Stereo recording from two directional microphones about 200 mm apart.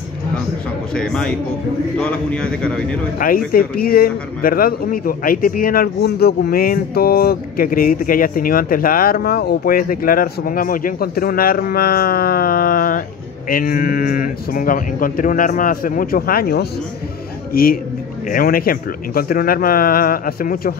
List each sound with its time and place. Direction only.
0.9 s a man's voice: 5° left (ahead or behind)
3.2 s a man's voice: 45° left (ahead or behind)